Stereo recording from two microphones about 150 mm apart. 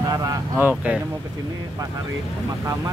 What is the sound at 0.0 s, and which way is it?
Vehicle, 25° right (ahead or behind).